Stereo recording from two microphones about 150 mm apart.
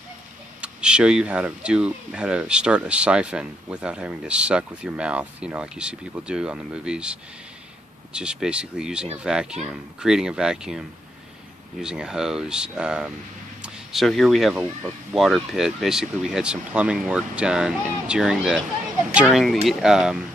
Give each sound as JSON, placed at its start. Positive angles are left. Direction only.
{"t": 0.6, "sound": "speech", "side_deg": -5}
{"t": 11.8, "sound": "speech", "side_deg": -5}